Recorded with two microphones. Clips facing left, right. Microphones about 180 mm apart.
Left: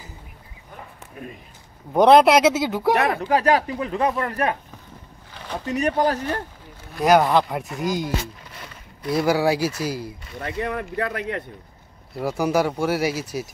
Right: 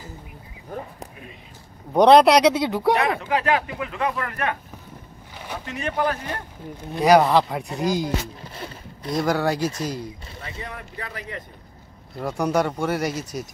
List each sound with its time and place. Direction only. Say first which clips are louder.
2.0 s speech: even; centre (ahead or behind)
3.0 s speech: left 2 dB; 45° left (ahead or behind)
5.3 s a sound: left 2 dB; 10° right (ahead or behind)
5.7 s speech: left 4 dB; 40° left (ahead or behind)
7.0 s speech: right 1 dB; centre (ahead or behind)
8.5 s a sound: right 5 dB; 30° right (ahead or behind)
9.1 s speech: left 3 dB; 5° left (ahead or behind)
10.4 s speech: left 10 dB; 60° left (ahead or behind)
12.2 s speech: left 1 dB; 5° left (ahead or behind)